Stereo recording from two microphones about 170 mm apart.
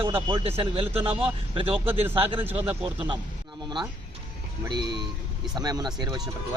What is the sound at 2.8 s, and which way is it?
Speech, 30° right (ahead or behind).